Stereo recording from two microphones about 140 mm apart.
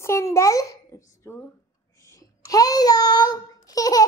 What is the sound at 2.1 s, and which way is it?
A child's voice, 25° left (ahead or behind).